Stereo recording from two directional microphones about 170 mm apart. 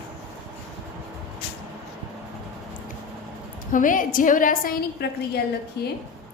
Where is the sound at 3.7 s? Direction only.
50° left (ahead or behind).